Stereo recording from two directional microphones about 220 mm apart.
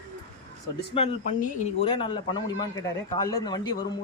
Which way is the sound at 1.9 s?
20° left (ahead or behind).